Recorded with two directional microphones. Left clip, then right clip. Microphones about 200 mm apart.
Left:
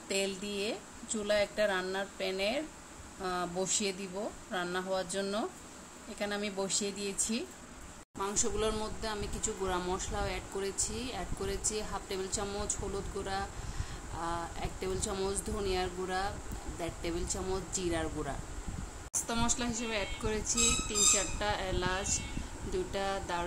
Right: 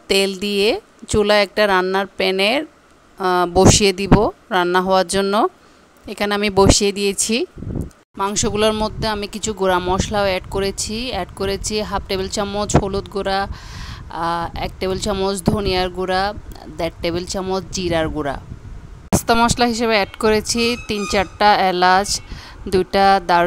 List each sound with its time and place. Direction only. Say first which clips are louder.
0.1 s speech: right 17 dB; 55° right (ahead or behind)